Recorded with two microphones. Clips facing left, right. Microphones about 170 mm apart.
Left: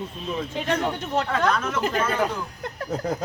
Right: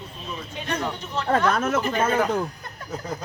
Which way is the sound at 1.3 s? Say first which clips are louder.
Right 7 dB; 45° right (ahead or behind).